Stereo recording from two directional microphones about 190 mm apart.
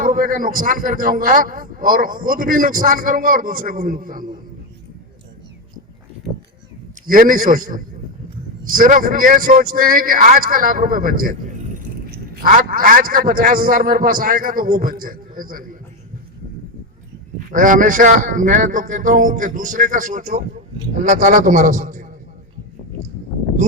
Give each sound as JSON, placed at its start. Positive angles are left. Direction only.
{"t": 0.0, "sound": "a man's voice", "side_deg": -45}
{"t": 7.1, "sound": "a man's voice", "side_deg": -45}
{"t": 17.5, "sound": "a man's voice", "side_deg": -45}